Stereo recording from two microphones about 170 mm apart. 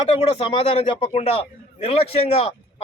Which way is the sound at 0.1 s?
35° left (ahead or behind).